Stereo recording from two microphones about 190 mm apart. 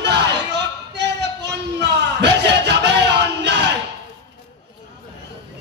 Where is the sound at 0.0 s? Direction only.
65° right (ahead or behind).